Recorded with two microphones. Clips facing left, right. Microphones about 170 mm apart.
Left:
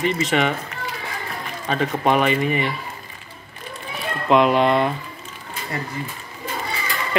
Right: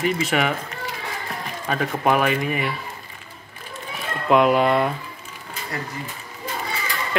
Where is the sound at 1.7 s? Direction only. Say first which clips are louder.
Left 1 dB; 5° right (ahead or behind).